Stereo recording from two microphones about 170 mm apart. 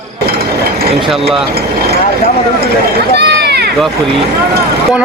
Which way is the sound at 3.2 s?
75° right (ahead or behind).